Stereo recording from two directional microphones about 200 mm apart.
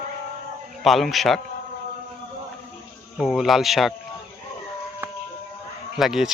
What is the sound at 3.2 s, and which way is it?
Speech, centre (ahead or behind).